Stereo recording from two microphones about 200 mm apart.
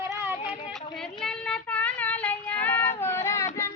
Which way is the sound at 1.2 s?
5° left (ahead or behind).